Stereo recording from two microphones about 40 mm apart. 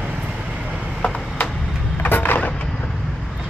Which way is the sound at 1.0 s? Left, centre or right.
Left.